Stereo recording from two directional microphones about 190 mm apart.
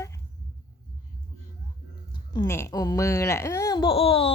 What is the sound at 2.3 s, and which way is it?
Speech, 15° left (ahead or behind).